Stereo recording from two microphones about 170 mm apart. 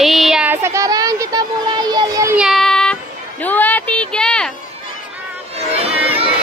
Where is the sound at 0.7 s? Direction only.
20° right (ahead or behind).